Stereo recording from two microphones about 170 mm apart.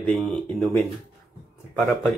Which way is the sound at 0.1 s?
5° left (ahead or behind).